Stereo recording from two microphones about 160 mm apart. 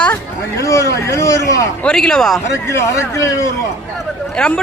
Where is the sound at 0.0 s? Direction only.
15° left (ahead or behind).